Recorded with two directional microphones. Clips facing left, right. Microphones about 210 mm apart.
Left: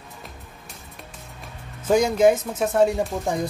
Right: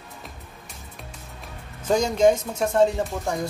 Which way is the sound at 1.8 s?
10° left (ahead or behind).